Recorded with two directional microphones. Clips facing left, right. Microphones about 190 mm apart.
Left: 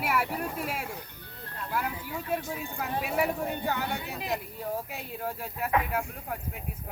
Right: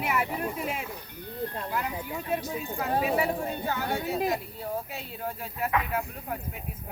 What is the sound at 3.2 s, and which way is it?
Speech, 15° left (ahead or behind).